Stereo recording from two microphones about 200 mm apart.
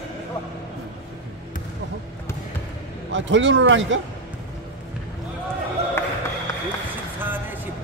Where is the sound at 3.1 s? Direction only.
65° right (ahead or behind).